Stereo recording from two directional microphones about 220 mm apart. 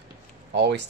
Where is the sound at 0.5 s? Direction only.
50° right (ahead or behind).